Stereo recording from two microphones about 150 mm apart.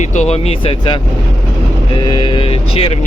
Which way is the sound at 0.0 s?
55° left (ahead or behind).